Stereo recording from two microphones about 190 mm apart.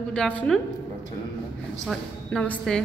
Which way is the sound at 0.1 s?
5° left (ahead or behind).